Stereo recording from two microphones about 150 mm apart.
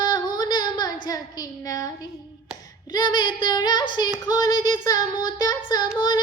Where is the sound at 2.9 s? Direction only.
30° left (ahead or behind).